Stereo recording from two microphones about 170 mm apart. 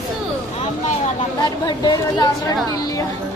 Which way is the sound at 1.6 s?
25° left (ahead or behind).